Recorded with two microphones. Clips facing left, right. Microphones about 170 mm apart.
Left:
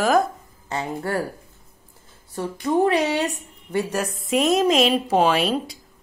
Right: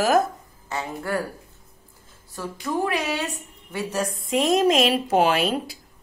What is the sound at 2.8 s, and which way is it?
A woman's voice, 20° left (ahead or behind).